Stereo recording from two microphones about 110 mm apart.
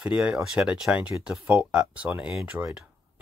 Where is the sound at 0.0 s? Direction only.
10° right (ahead or behind).